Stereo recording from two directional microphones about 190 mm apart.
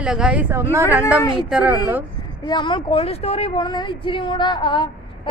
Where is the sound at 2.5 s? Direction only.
25° left (ahead or behind).